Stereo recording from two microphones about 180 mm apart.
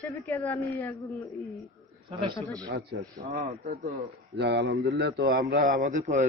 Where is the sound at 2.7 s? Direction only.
60° right (ahead or behind).